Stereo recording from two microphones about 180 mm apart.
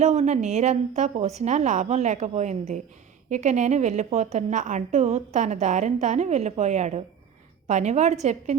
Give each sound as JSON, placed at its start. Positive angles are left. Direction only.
{"t": 0.0, "sound": "a woman's voice", "side_deg": -40}